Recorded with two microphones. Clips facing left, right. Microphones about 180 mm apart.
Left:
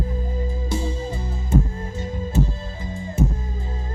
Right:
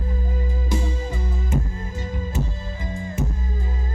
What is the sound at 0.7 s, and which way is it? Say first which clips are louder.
Music: even; 30° left (ahead or behind).